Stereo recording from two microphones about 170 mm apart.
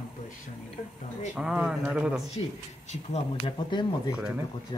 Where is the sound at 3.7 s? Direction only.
25° left (ahead or behind).